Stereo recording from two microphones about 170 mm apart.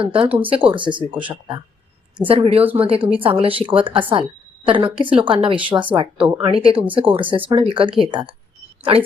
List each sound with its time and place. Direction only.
0.0 s a woman's voice: 30° right (ahead or behind)
6.1 s speech: 5° right (ahead or behind)
6.4 s a woman's voice: 35° right (ahead or behind)